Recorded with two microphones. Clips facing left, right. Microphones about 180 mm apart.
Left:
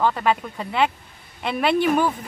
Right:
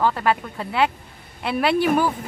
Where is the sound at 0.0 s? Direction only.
5° right (ahead or behind).